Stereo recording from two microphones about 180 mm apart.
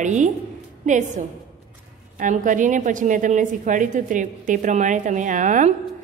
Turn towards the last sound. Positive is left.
turn(degrees=-45)  # may be behind; listen again after turning